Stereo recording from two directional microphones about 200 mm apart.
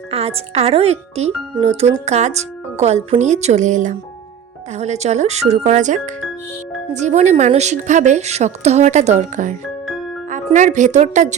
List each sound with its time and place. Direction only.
0.1 s a woman's voice: 30° right (ahead or behind)